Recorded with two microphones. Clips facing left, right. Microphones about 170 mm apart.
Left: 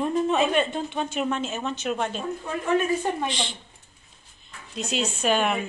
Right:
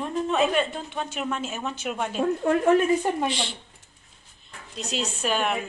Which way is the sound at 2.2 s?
65° right (ahead or behind).